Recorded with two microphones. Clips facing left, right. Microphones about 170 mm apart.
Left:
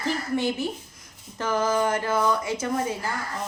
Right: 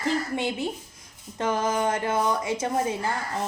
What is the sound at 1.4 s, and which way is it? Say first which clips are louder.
Speech: left 1 dB; 20° right (ahead or behind).